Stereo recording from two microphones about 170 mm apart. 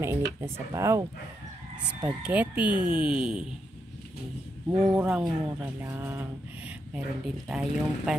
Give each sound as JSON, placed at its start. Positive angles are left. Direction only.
{"t": 0.0, "sound": "speech", "side_deg": -15}
{"t": 2.0, "sound": "speech", "side_deg": -10}
{"t": 4.9, "sound": "speech", "side_deg": -5}